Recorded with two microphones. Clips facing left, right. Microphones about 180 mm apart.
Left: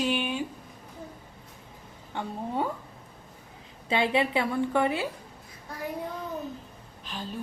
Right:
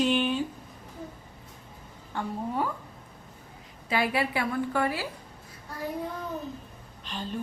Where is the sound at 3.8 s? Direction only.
25° left (ahead or behind).